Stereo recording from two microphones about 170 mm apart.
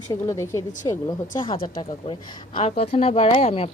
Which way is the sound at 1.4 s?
30° left (ahead or behind).